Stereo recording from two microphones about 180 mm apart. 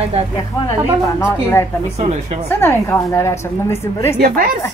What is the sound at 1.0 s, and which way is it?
Speech, 15° left (ahead or behind).